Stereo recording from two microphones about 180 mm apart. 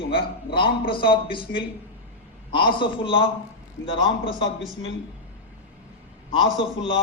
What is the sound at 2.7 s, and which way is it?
A man's voice, 30° left (ahead or behind).